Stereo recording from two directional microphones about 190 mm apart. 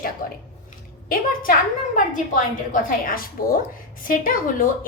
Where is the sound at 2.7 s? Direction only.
45° left (ahead or behind).